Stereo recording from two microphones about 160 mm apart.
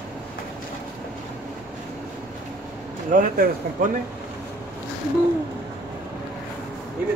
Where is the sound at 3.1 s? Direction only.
55° right (ahead or behind).